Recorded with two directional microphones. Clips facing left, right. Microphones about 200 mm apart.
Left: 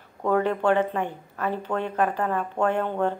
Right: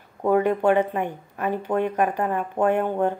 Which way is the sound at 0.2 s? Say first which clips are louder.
Right 3 dB; 15° right (ahead or behind).